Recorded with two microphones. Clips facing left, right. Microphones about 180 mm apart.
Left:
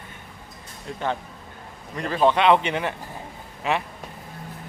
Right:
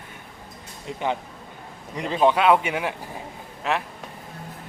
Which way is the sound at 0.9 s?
15° right (ahead or behind).